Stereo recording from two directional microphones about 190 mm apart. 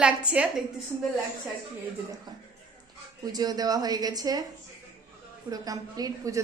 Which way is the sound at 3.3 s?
20° right (ahead or behind).